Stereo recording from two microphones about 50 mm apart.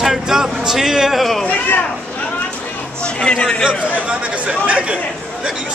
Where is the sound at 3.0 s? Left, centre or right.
Centre.